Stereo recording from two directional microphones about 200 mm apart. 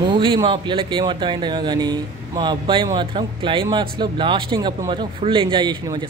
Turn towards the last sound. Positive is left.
turn(degrees=-20)  # may be behind; listen again after turning